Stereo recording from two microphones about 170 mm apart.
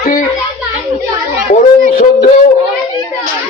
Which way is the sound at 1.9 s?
60° left (ahead or behind).